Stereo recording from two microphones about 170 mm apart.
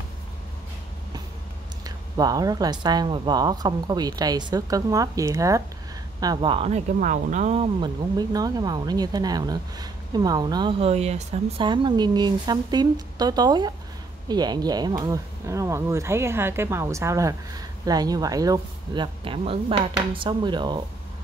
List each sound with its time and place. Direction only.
1.9 s speech: 20° right (ahead or behind)
7.0 s speech: 50° right (ahead or behind)
11.6 s speech: 25° right (ahead or behind)